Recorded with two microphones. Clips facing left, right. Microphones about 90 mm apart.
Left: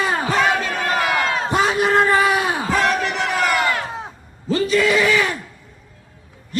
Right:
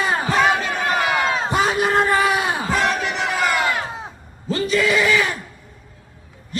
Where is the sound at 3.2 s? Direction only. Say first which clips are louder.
Even; 10° right (ahead or behind).